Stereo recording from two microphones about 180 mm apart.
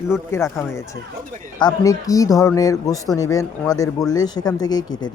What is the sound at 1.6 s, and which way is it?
Speech, 20° left (ahead or behind).